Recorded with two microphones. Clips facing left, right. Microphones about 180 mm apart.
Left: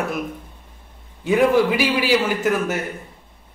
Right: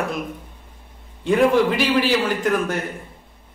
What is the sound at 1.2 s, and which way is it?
A man's voice, 5° left (ahead or behind).